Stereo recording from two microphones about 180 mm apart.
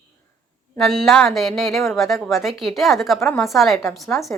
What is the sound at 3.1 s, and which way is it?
Speech, 15° left (ahead or behind).